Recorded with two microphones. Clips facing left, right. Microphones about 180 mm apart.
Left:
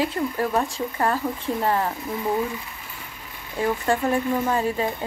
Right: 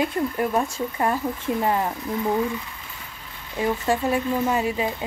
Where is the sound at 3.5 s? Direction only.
10° right (ahead or behind).